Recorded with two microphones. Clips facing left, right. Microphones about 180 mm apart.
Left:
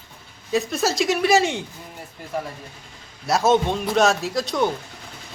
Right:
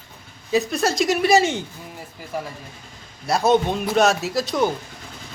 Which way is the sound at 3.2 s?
Centre (ahead or behind).